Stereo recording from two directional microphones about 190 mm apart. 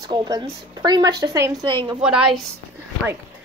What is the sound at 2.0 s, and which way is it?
Speech, 5° right (ahead or behind).